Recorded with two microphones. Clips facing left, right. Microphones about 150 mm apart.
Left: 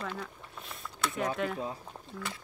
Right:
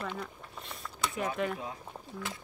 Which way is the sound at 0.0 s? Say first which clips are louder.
Even; 5° right (ahead or behind).